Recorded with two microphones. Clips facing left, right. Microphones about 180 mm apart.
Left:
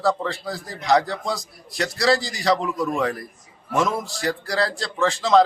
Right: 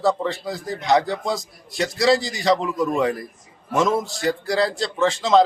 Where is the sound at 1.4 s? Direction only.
Centre (ahead or behind).